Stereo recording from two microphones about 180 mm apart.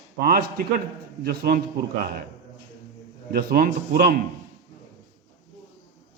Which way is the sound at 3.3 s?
55° right (ahead or behind).